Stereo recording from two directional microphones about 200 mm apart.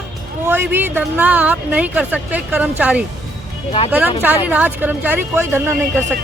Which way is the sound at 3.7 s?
30° left (ahead or behind).